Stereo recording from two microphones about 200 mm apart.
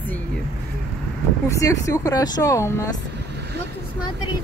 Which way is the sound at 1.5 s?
15° left (ahead or behind).